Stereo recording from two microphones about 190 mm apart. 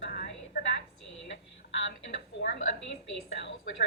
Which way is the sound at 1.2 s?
70° left (ahead or behind).